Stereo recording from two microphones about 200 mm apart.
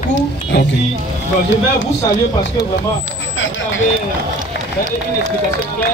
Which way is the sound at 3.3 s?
70° left (ahead or behind).